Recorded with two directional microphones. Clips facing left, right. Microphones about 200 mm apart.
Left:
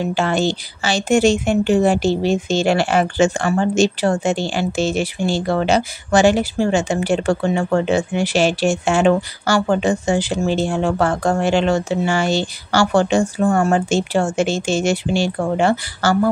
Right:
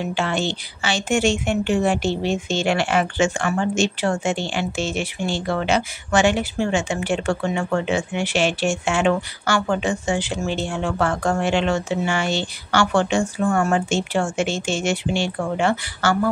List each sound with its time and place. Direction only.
0.0 s a woman's voice: 40° left (ahead or behind)